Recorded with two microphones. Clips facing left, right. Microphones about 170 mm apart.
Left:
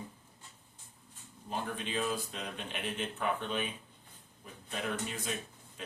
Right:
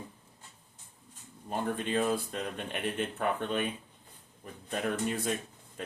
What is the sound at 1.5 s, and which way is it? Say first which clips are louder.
Speech: right 5 dB; 50° right (ahead or behind).